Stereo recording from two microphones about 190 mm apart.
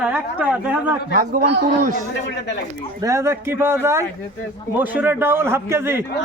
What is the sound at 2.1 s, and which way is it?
Speech, 65° left (ahead or behind).